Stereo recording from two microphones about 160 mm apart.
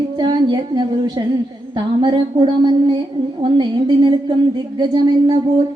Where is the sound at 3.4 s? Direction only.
30° right (ahead or behind).